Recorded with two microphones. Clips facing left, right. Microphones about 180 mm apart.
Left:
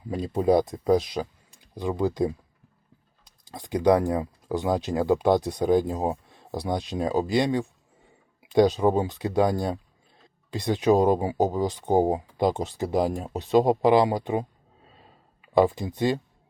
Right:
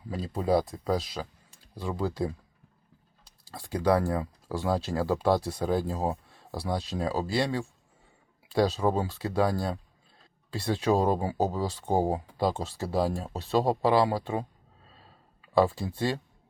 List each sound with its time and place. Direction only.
0.1 s speech: 20° left (ahead or behind)
3.5 s speech: 15° left (ahead or behind)
15.5 s speech: 15° left (ahead or behind)